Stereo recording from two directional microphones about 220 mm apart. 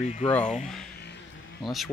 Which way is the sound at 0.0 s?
30° left (ahead or behind).